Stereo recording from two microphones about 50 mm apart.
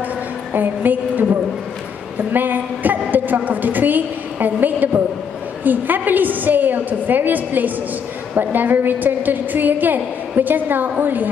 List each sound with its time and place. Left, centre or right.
0.5 s a woman's voice: right
2.3 s a woman's voice: right